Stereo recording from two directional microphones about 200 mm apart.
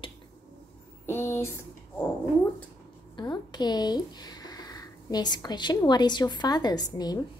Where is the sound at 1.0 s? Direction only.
10° left (ahead or behind).